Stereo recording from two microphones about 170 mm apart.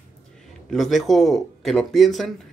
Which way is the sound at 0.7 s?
Centre (ahead or behind).